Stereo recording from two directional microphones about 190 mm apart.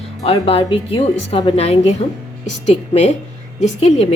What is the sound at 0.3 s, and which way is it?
A woman's voice, 30° left (ahead or behind).